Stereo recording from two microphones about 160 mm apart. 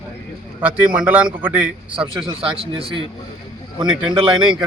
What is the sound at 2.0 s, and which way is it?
A man's voice, 30° right (ahead or behind).